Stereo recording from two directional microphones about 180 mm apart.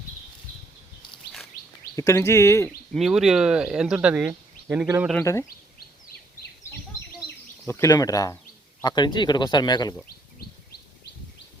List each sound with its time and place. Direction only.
1.5 s chirp: 60° left (ahead or behind)
2.0 s speech: 15° left (ahead or behind)
2.6 s speech: centre (ahead or behind)
5.2 s speech: 15° left (ahead or behind)
7.7 s speech: 20° left (ahead or behind)